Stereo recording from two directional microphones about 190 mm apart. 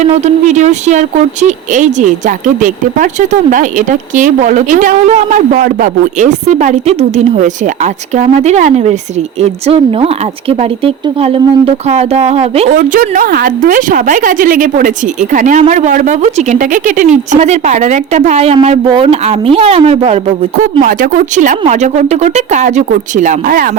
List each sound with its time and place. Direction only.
0.2 s speech: 40° right (ahead or behind)
20.8 s speech: 45° right (ahead or behind)